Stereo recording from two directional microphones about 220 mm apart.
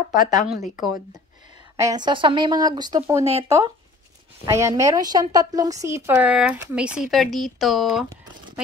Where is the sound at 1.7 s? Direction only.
15° right (ahead or behind).